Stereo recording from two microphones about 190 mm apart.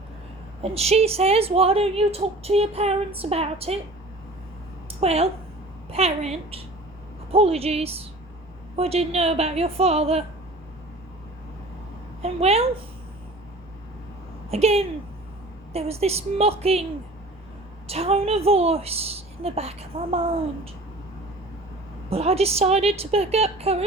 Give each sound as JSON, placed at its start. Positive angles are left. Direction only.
{"t": 0.6, "sound": "a woman's voice", "side_deg": -35}
{"t": 4.9, "sound": "a woman's voice", "side_deg": -30}
{"t": 12.2, "sound": "a woman's voice", "side_deg": -30}
{"t": 14.5, "sound": "a woman's voice", "side_deg": -30}
{"t": 17.8, "sound": "a woman's voice", "side_deg": -30}
{"t": 22.1, "sound": "a woman's voice", "side_deg": -30}